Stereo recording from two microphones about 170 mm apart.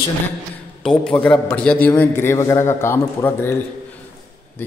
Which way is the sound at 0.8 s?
5° left (ahead or behind).